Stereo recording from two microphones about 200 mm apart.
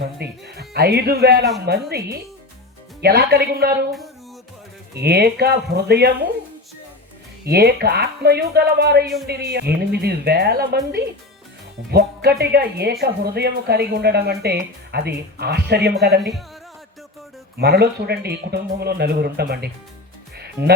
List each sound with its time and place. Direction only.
0.2 s speech: 55° right (ahead or behind)
4.9 s speech: 55° right (ahead or behind)
7.4 s speech: 50° right (ahead or behind)
17.6 s speech: 55° right (ahead or behind)
20.3 s music: 55° right (ahead or behind)